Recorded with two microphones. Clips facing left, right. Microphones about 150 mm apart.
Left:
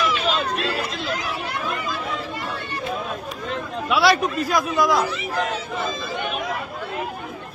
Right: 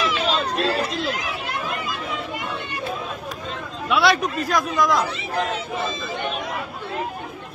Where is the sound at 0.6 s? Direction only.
35° right (ahead or behind).